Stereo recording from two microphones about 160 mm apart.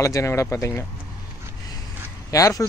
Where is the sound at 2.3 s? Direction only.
20° left (ahead or behind).